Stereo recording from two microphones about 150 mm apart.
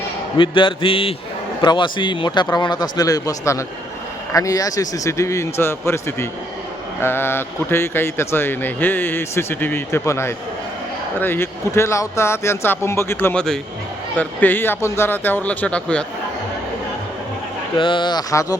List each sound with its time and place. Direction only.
0.3 s a man's voice: 35° left (ahead or behind); by 16.0 s 5° left (ahead or behind)
17.7 s a man's voice: 30° left (ahead or behind)